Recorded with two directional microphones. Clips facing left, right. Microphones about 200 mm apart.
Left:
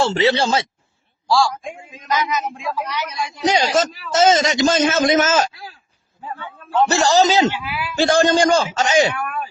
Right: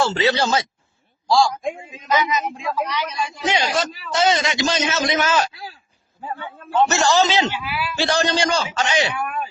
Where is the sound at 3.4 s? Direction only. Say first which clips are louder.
Left 5 dB; 40° left (ahead or behind).